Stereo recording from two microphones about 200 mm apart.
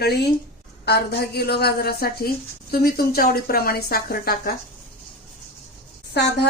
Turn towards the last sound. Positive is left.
turn(degrees=55)  # may be behind; listen again after turning